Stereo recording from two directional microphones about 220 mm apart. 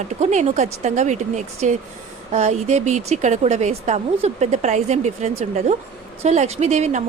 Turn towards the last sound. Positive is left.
turn(degrees=-35)  # may be behind; listen again after turning